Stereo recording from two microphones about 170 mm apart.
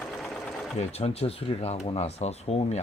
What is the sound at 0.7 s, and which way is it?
Speech, 35° left (ahead or behind).